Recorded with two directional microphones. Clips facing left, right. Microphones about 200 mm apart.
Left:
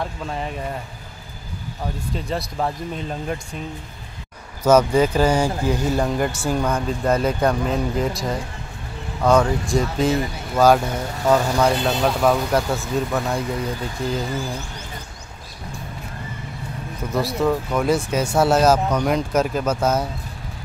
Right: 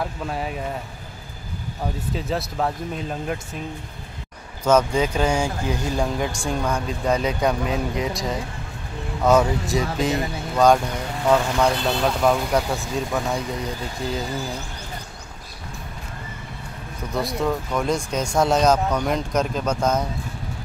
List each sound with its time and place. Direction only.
0.0 s speech: 5° right (ahead or behind)
2.1 s speech: centre (ahead or behind)
4.6 s speech: 5° left (ahead or behind)
17.1 s speech: centre (ahead or behind)